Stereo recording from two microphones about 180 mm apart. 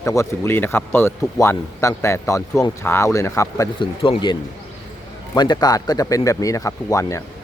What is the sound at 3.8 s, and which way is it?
Speech, 30° left (ahead or behind).